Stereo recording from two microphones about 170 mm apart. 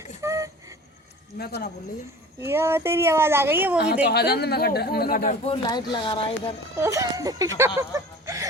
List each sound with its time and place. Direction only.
0.2 s vehicle: 20° right (ahead or behind)
1.4 s speech: 65° left (ahead or behind)
2.4 s speech: 15° right (ahead or behind)
4.0 s speech: 70° left (ahead or behind); by 5.4 s 55° left (ahead or behind)
5.6 s speech: 25° left (ahead or behind)
6.7 s speech: 15° right (ahead or behind)
7.8 s a sound: 20° right (ahead or behind)